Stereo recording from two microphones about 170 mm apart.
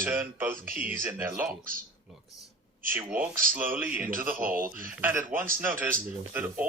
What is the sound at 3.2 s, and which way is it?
Speech, 55° right (ahead or behind).